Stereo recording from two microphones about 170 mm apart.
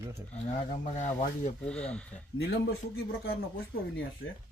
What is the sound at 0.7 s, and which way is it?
Speech, 45° left (ahead or behind).